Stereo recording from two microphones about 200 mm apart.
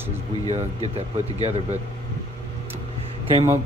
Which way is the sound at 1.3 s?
30° right (ahead or behind).